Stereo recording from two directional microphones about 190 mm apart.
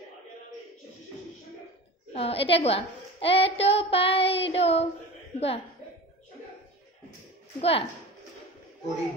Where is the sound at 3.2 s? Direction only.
30° left (ahead or behind).